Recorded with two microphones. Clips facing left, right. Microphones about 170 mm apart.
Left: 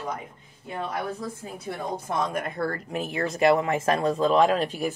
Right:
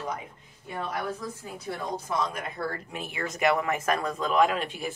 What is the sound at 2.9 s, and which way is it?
Speech, 35° left (ahead or behind).